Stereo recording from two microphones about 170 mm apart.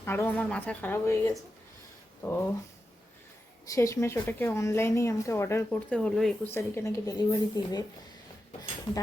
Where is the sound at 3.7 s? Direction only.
15° left (ahead or behind).